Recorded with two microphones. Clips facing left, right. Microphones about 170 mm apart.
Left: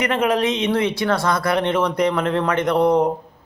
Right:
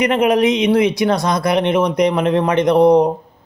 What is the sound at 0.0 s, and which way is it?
A man's voice, 15° right (ahead or behind).